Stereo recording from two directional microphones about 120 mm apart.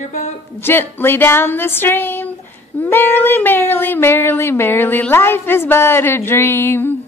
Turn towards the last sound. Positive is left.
turn(degrees=20)  # may be behind; listen again after turning